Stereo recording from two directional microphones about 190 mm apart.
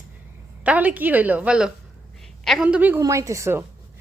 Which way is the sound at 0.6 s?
5° right (ahead or behind).